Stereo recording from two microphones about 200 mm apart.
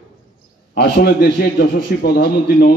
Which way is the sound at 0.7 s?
55° left (ahead or behind).